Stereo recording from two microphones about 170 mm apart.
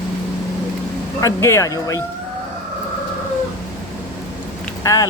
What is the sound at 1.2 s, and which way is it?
Speech, 15° left (ahead or behind).